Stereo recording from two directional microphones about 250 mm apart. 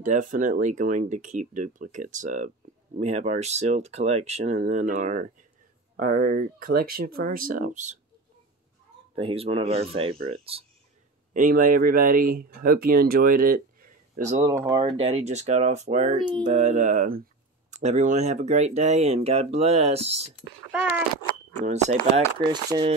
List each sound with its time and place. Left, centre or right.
0.0 s speech: right
9.1 s speech: right
11.3 s speech: right
14.4 s speech: centre
20.7 s speech: centre
22.4 s speech: centre